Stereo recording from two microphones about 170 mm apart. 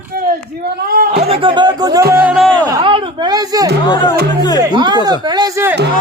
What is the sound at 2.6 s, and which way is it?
Speech, 25° right (ahead or behind).